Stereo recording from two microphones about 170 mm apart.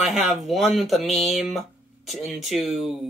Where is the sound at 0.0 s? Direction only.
Centre (ahead or behind).